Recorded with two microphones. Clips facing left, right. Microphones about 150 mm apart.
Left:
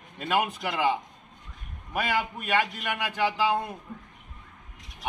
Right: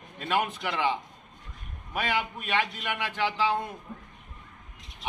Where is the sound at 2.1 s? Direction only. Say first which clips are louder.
Left 3 dB; 40° left (ahead or behind).